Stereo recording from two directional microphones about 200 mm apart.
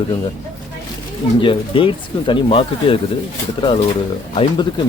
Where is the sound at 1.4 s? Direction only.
25° left (ahead or behind).